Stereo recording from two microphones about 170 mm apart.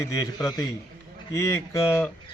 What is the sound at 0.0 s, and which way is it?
A man's voice, 20° left (ahead or behind).